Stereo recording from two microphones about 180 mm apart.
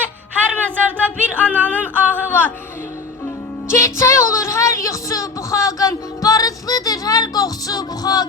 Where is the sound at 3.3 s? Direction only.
15° left (ahead or behind).